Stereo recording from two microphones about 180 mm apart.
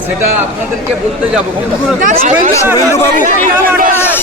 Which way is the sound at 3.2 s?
50° right (ahead or behind).